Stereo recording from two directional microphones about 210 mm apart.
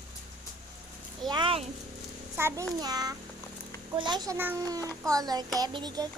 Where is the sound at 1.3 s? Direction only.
25° right (ahead or behind).